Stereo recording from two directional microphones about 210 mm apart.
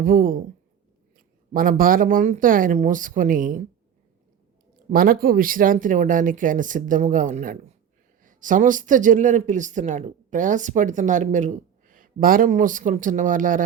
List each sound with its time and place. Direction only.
0.0 s speech: 40° right (ahead or behind)
4.9 s speech: 45° right (ahead or behind)